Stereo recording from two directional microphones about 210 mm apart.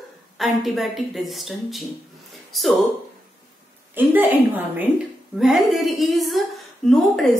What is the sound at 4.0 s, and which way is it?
A woman's voice, 10° right (ahead or behind).